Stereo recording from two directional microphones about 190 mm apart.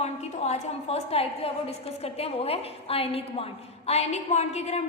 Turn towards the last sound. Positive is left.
turn(degrees=35)  # may be behind; listen again after turning